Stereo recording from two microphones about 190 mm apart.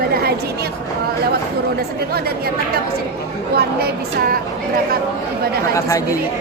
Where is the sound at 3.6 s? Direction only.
55° right (ahead or behind).